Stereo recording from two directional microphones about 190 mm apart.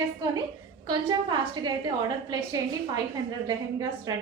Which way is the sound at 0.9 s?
25° right (ahead or behind).